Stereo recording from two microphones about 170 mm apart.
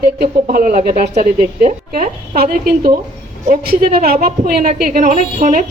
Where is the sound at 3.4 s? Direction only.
60° right (ahead or behind).